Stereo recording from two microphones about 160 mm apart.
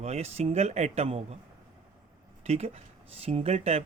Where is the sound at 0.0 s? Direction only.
40° right (ahead or behind).